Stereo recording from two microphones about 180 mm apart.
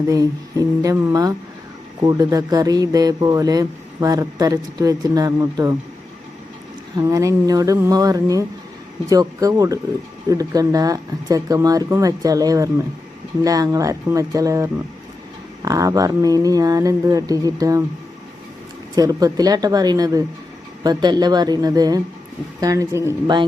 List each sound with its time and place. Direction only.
0.1 s speech: 20° right (ahead or behind)
6.9 s speech: 20° right (ahead or behind)
18.9 s speech: 20° right (ahead or behind)